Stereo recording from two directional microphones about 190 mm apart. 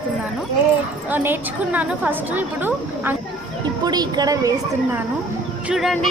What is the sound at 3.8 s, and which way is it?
A woman's voice, 20° right (ahead or behind).